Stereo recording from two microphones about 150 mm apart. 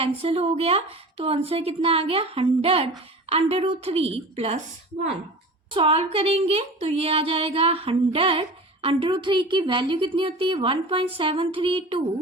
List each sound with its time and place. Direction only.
0.0 s speech: 40° right (ahead or behind)
5.7 s speech: 35° right (ahead or behind)